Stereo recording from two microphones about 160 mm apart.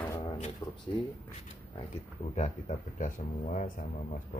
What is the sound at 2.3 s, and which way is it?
Speech, 50° left (ahead or behind).